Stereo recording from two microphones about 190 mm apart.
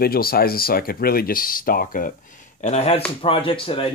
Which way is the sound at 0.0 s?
50° left (ahead or behind).